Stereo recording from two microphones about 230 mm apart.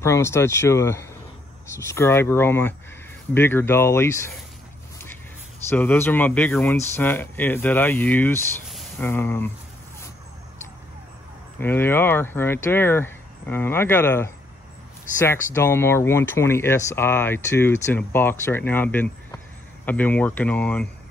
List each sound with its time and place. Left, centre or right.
0.0 s speech: centre
5.7 s speech: centre
11.6 s speech: centre